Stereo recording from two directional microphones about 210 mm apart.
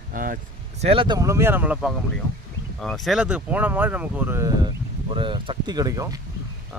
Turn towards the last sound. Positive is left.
turn(degrees=-15)  # may be behind; listen again after turning